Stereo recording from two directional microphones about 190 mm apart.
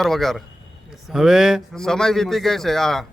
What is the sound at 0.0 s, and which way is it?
Speech, centre (ahead or behind).